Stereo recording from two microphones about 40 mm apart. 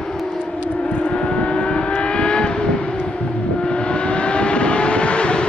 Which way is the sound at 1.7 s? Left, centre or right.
Left.